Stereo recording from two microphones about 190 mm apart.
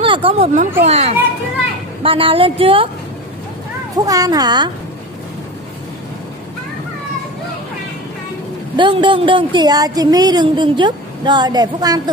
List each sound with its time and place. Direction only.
0.0 s a child's voice: 30° right (ahead or behind)
3.9 s a woman's voice: 20° right (ahead or behind)
8.7 s a woman's voice: 25° right (ahead or behind)